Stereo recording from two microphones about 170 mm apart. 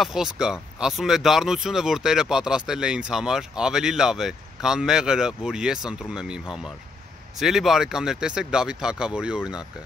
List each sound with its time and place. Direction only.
0.0 s speech: 5° right (ahead or behind)